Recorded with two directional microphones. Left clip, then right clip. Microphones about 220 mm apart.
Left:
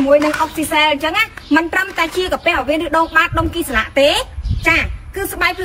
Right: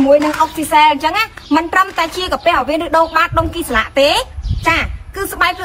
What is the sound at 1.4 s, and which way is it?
A woman's voice, 15° right (ahead or behind).